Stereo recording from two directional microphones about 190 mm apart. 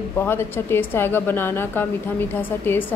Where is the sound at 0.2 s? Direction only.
10° left (ahead or behind).